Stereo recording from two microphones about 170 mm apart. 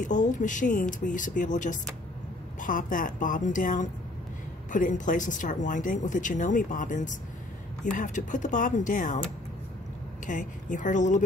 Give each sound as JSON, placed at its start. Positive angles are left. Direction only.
{"t": 0.0, "sound": "speech", "side_deg": 45}
{"t": 10.2, "sound": "speech", "side_deg": 50}